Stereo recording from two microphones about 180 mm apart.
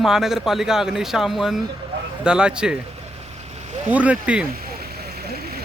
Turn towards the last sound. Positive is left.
turn(degrees=-5)  # may be behind; listen again after turning